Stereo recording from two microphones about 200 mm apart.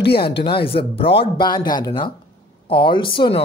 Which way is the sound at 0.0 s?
55° left (ahead or behind).